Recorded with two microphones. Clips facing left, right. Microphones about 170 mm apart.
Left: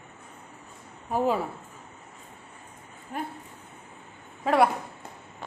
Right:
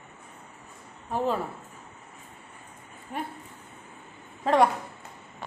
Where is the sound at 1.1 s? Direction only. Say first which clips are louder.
Left 2 dB; 10° left (ahead or behind).